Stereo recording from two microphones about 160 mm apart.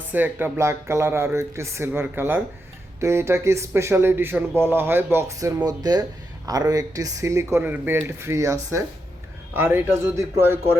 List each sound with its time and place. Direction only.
0.1 s speech: 10° right (ahead or behind)